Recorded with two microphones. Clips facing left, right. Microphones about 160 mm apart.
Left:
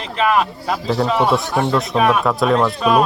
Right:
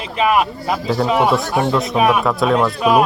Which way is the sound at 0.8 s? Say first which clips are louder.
Right 1 dB; centre (ahead or behind).